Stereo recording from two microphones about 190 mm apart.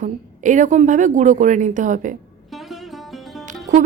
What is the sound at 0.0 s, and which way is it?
Speech, 40° right (ahead or behind).